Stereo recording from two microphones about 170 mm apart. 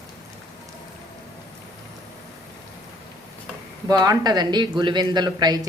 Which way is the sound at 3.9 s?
25° right (ahead or behind).